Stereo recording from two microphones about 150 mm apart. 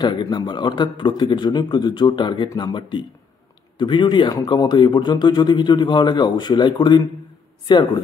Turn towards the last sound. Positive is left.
turn(degrees=30)  # may be behind; listen again after turning